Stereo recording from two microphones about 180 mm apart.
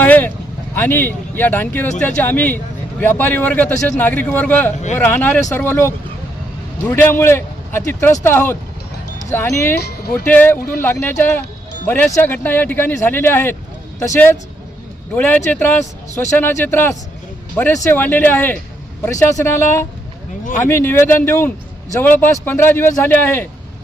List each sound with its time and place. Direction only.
0.0 s vehicle: 10° left (ahead or behind)
0.8 s a man's voice: 10° left (ahead or behind)
9.7 s speech: 60° left (ahead or behind)
10.2 s a man's voice: 10° left (ahead or behind)